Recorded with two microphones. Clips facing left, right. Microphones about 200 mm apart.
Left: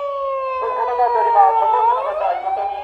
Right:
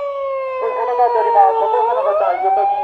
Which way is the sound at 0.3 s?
15° right (ahead or behind).